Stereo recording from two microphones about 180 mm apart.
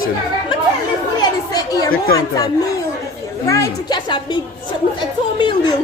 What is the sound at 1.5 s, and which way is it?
Chatter, 20° left (ahead or behind).